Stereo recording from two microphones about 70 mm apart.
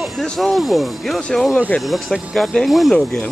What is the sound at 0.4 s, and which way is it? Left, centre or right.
Speech, centre.